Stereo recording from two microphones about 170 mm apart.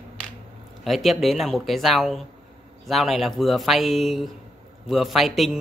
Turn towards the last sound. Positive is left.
turn(degrees=0)  # may be behind; listen again after turning